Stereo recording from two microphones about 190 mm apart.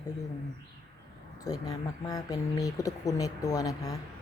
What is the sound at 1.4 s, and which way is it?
A woman's voice, 20° left (ahead or behind).